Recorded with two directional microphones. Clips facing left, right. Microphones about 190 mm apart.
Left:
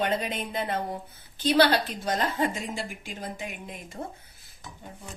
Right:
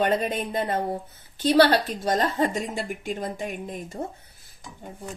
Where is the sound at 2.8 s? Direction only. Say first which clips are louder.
Right 7 dB; 50° right (ahead or behind).